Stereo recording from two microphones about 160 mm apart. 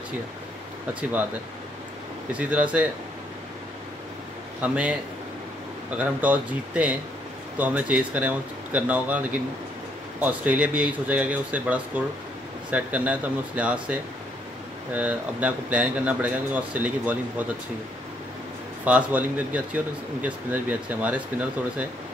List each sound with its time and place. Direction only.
2.3 s speech: 10° right (ahead or behind)
4.6 s speech: 10° right (ahead or behind)
18.9 s speech: 10° right (ahead or behind)